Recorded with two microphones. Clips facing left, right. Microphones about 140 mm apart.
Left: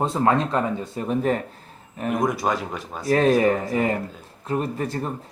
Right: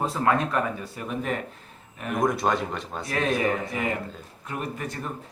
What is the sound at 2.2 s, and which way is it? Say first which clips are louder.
Speech: right 2 dB; centre (ahead or behind).